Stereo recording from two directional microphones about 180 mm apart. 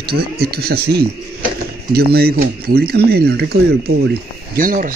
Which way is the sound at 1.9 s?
60° right (ahead or behind).